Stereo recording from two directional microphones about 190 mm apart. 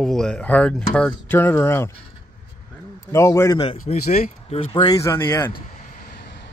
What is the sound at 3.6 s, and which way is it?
Speech, 30° left (ahead or behind).